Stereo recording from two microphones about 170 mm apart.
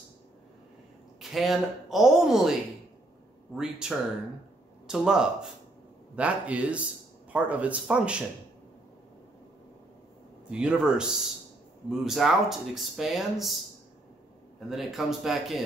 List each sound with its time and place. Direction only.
1.2 s speech: centre (ahead or behind)
3.5 s speech: 5° right (ahead or behind)
10.5 s speech: 5° right (ahead or behind)
14.7 s speech: centre (ahead or behind)